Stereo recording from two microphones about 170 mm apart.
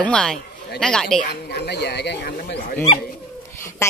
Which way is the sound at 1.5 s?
75° left (ahead or behind).